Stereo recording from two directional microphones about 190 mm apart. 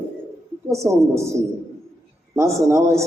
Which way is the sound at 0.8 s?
Centre (ahead or behind).